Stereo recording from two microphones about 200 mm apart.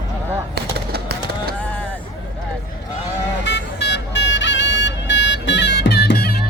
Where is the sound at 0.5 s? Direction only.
55° right (ahead or behind).